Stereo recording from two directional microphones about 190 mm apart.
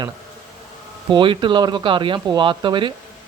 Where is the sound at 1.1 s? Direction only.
25° right (ahead or behind).